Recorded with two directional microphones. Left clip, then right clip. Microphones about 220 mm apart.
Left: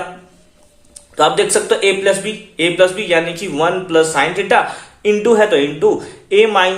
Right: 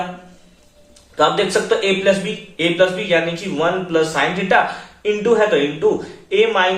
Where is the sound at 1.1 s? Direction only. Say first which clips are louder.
Left 3 dB; 50° left (ahead or behind).